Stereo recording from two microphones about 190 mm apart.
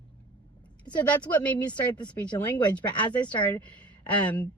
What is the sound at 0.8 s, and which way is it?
Speech, 5° left (ahead or behind).